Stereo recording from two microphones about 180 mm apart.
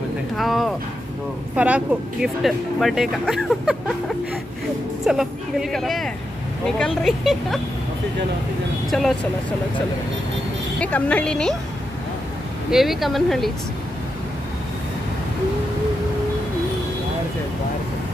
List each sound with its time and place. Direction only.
0.4 s speech: centre (ahead or behind)
5.0 s speech: centre (ahead or behind)
8.9 s speech: centre (ahead or behind)
10.8 s a woman's voice: 10° left (ahead or behind)
12.7 s speech: centre (ahead or behind)